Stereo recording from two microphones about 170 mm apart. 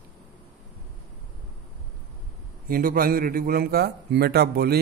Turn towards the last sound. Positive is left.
turn(degrees=-65)  # may be behind; listen again after turning